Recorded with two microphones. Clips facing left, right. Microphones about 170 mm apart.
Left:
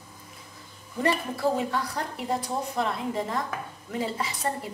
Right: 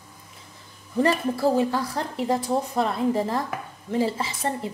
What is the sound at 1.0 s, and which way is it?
A woman's voice, 30° right (ahead or behind).